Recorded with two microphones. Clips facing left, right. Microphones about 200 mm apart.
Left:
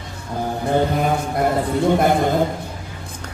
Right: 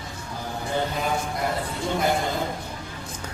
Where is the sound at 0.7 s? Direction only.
55° left (ahead or behind).